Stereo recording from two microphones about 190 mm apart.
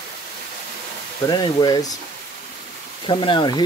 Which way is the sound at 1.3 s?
20° left (ahead or behind).